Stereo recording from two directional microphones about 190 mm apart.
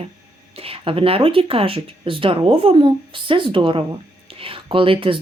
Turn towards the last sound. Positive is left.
turn(degrees=-30)  # may be behind; listen again after turning